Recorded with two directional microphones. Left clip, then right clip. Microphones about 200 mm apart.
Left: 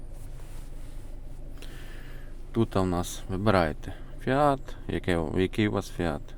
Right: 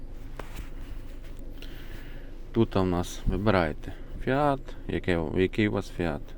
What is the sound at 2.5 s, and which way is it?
Speech, 10° left (ahead or behind).